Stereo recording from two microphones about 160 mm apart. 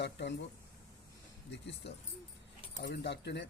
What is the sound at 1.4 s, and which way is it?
A man's voice, 90° left.